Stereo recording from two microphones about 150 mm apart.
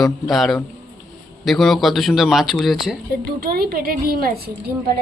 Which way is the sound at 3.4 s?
85° right.